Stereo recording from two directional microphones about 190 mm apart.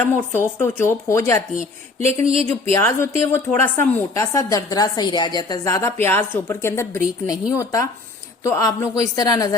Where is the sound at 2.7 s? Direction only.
15° left (ahead or behind).